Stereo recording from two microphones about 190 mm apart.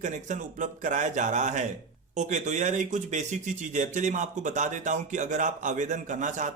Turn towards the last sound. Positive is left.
turn(degrees=-40)  # may be behind; listen again after turning